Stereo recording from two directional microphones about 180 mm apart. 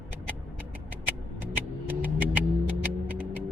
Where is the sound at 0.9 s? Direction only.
10° right (ahead or behind).